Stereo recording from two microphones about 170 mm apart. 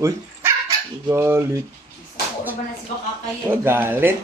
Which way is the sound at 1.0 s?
15° right (ahead or behind).